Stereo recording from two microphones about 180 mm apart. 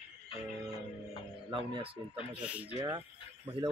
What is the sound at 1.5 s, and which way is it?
Speech, 30° right (ahead or behind).